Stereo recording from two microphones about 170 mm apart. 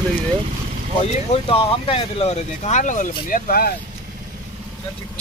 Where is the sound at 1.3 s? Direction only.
35° left (ahead or behind); by 3.7 s 60° left (ahead or behind).